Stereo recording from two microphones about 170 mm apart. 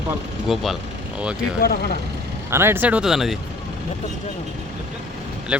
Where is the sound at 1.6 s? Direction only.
65° left (ahead or behind).